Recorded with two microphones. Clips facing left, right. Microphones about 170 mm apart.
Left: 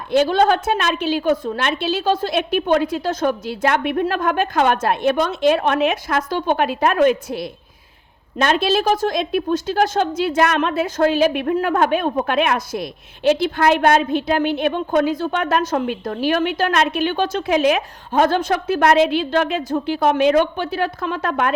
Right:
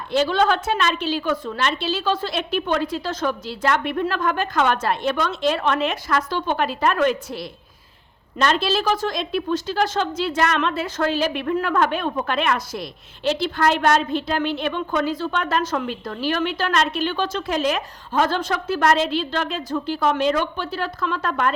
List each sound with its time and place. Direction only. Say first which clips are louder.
0.1 s a woman's voice: left 4 dB; 50° left (ahead or behind)